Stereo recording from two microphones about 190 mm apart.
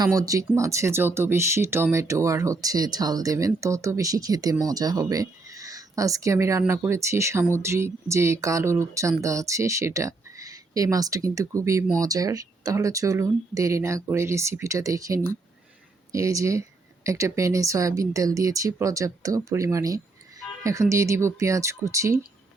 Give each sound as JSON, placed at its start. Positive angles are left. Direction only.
{"t": 0.0, "sound": "speech", "side_deg": -20}